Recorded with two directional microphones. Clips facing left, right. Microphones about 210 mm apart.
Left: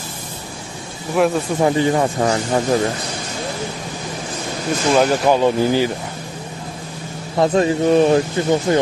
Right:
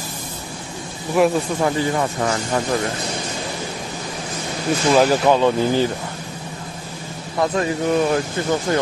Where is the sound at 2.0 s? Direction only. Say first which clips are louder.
Left 4 dB; 30° left (ahead or behind).